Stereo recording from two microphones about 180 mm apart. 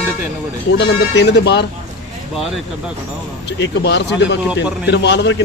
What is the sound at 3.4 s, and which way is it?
Speech, 75° left (ahead or behind).